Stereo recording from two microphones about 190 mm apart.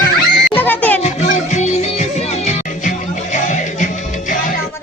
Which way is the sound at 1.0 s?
35° left (ahead or behind).